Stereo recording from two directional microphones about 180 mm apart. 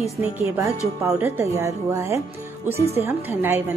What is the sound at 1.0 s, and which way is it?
A woman's voice, 15° right (ahead or behind).